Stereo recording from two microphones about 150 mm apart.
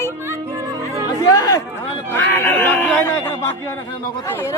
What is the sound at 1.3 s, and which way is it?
Speech, 25° left (ahead or behind).